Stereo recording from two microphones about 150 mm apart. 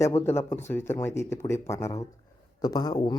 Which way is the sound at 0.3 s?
15° left (ahead or behind).